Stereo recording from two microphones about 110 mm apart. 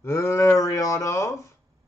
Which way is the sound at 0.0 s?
25° left (ahead or behind).